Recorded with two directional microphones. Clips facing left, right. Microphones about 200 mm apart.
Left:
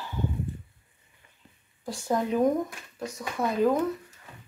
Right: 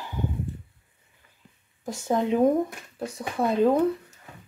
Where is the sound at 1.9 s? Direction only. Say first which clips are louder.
Right 3 dB; 20° right (ahead or behind).